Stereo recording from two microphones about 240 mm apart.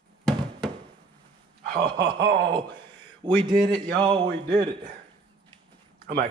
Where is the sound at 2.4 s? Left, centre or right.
Centre.